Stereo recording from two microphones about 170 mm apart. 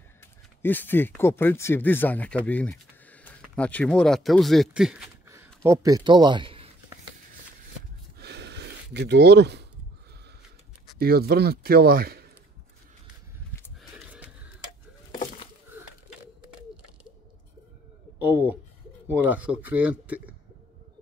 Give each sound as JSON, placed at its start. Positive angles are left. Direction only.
{"t": 0.2, "sound": "speech", "side_deg": 10}
{"t": 5.3, "sound": "speech", "side_deg": -15}
{"t": 8.2, "sound": "gasp", "side_deg": -80}
{"t": 11.0, "sound": "speech", "side_deg": -65}
{"t": 13.7, "sound": "a sound", "side_deg": -5}
{"t": 19.0, "sound": "speech", "side_deg": -10}